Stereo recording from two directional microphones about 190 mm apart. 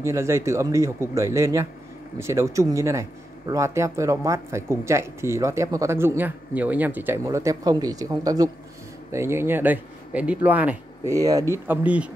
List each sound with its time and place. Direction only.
0.0 s speech: 15° right (ahead or behind)